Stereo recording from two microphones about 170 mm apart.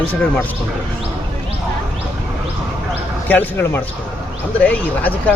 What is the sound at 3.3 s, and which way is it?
A man's voice, 10° left (ahead or behind).